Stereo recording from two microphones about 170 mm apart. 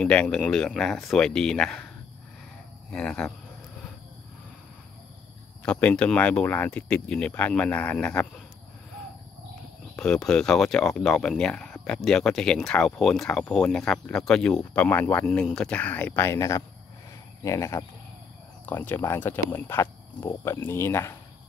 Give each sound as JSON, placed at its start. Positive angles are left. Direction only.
{"t": 0.0, "sound": "speech", "side_deg": 5}
{"t": 2.9, "sound": "speech", "side_deg": 5}
{"t": 5.6, "sound": "speech", "side_deg": 5}
{"t": 9.9, "sound": "speech", "side_deg": 5}